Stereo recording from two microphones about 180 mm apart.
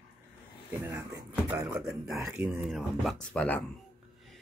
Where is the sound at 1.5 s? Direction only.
15° right (ahead or behind).